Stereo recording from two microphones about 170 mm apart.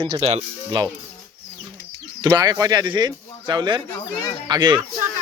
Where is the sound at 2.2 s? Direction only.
20° right (ahead or behind).